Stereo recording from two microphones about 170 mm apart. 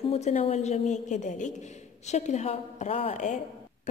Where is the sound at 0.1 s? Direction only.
40° left (ahead or behind).